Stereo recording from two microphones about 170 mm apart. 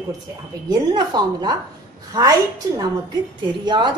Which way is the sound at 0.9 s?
25° right (ahead or behind).